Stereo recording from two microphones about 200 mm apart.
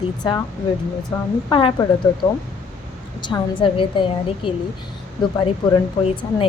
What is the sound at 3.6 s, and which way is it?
Speech, 25° left (ahead or behind).